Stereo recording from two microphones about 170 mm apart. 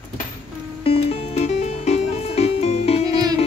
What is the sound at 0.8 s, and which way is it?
Music, 35° left (ahead or behind).